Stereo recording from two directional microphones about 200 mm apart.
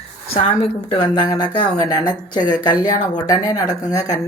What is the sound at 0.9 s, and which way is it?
Speech, 25° left (ahead or behind).